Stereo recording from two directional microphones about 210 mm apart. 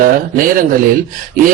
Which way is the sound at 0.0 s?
40° right (ahead or behind).